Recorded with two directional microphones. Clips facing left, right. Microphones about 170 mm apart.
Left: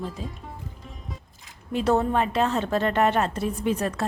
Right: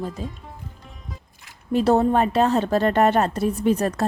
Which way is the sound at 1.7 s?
35° right (ahead or behind).